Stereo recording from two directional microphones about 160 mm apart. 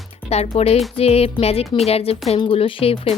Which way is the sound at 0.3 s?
40° left (ahead or behind).